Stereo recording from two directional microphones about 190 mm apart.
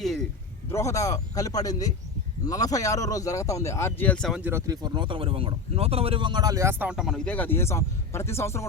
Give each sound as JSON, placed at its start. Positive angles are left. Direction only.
{"t": 0.0, "sound": "a man's voice", "side_deg": 0}
{"t": 0.7, "sound": "speech", "side_deg": 15}